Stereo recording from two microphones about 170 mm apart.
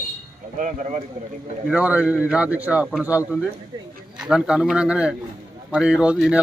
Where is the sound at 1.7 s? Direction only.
10° right (ahead or behind).